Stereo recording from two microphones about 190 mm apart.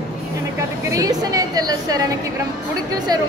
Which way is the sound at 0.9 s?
20° right (ahead or behind).